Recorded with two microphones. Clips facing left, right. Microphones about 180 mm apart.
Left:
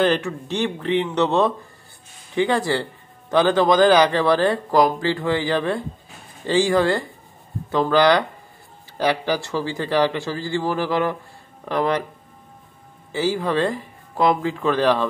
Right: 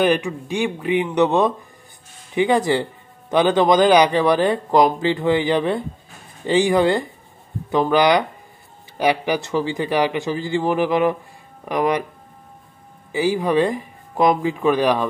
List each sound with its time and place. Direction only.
0.0 s a man's voice: 15° right (ahead or behind)
13.1 s speech: 15° right (ahead or behind)